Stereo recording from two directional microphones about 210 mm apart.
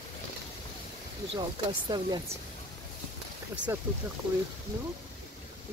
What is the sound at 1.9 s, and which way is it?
Speech, 20° right (ahead or behind).